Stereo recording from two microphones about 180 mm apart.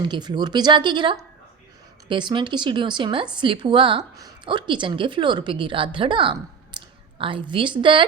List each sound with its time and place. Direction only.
0.0 s a woman's voice: 25° right (ahead or behind)
6.7 s a sound: 30° right (ahead or behind)
7.5 s a woman's voice: 25° right (ahead or behind)